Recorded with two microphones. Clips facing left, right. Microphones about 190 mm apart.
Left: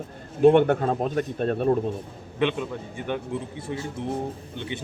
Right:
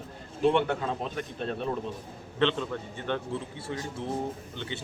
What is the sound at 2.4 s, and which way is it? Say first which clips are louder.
Speech: left 2 dB; 10° left (ahead or behind).